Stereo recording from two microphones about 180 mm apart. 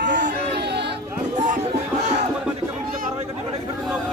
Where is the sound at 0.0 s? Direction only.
75° right (ahead or behind).